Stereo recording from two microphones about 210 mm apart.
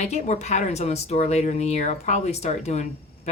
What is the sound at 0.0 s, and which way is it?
Speech, 35° left (ahead or behind).